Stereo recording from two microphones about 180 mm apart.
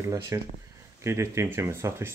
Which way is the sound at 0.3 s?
15° right (ahead or behind).